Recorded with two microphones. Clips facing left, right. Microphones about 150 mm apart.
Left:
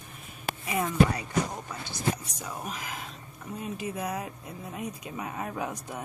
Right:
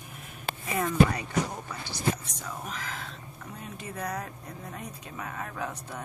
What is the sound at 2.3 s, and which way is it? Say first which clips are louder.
Speech: left 1 dB; 10° left (ahead or behind).